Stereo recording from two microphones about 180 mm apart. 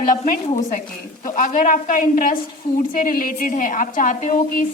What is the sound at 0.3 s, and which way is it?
A woman's voice, 40° left (ahead or behind).